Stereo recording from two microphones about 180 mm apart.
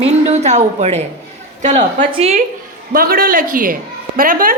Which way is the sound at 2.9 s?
55° right (ahead or behind).